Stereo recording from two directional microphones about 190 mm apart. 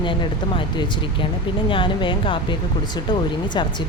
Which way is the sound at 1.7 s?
25° left (ahead or behind).